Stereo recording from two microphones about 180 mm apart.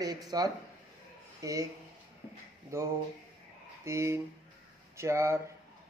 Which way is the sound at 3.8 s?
15° right (ahead or behind).